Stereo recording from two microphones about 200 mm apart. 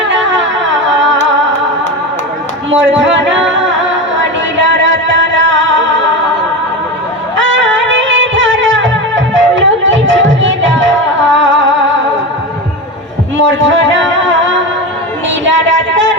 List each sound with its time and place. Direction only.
0.0 s humming: 65° right (ahead or behind)
2.6 s music: 65° right (ahead or behind)
7.3 s music: 65° right (ahead or behind)
13.3 s music: 70° right (ahead or behind)